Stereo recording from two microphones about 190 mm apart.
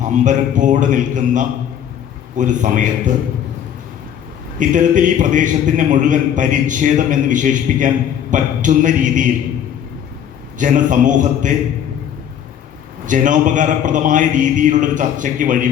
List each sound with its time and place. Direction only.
0.0 s a man's voice: 40° right (ahead or behind)
4.6 s a man's voice: 40° right (ahead or behind)
10.6 s a man's voice: 40° right (ahead or behind)
13.1 s a man's voice: 40° right (ahead or behind)